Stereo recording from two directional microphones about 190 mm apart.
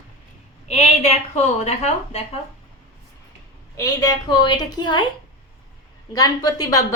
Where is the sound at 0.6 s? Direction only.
35° left (ahead or behind).